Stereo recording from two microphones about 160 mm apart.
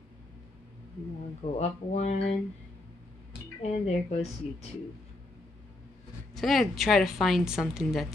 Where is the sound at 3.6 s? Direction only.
40° left (ahead or behind).